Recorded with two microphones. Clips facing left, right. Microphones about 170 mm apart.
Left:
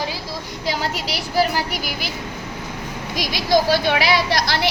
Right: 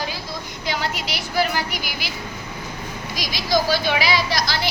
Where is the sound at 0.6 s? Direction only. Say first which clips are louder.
Left 2 dB; 35° left (ahead or behind).